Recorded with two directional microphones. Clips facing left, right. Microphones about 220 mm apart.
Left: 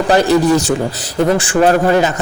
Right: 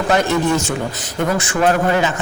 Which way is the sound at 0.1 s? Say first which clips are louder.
Left 5 dB; 35° left (ahead or behind).